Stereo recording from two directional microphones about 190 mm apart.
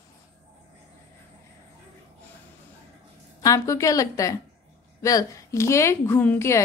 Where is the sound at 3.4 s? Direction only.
15° left (ahead or behind).